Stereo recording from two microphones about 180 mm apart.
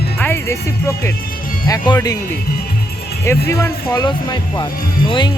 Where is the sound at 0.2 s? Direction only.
15° left (ahead or behind).